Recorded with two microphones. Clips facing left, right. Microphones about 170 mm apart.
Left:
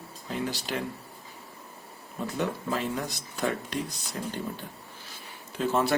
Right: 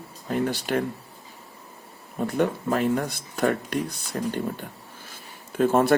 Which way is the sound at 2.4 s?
55° right (ahead or behind).